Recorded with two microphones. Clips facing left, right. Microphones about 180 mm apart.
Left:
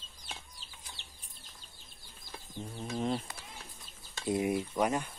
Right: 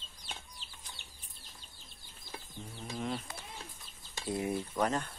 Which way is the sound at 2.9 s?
30° left (ahead or behind).